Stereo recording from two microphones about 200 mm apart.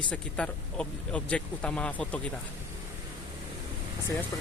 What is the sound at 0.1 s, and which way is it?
Speech, 5° left (ahead or behind).